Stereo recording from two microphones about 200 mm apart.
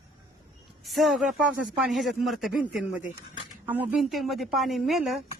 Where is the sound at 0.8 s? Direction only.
Centre (ahead or behind).